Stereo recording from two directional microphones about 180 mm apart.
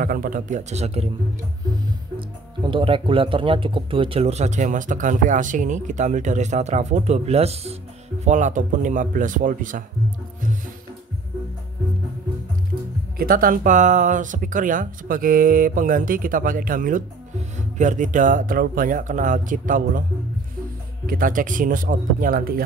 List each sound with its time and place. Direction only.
0.0 s speech: 50° right (ahead or behind); by 1.0 s 35° right (ahead or behind)
2.1 s speech: 30° right (ahead or behind); by 9.8 s 50° right (ahead or behind)
13.2 s speech: 55° right (ahead or behind)
21.1 s speech: 50° right (ahead or behind)